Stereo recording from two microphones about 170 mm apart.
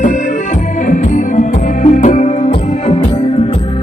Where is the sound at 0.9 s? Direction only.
50° left (ahead or behind).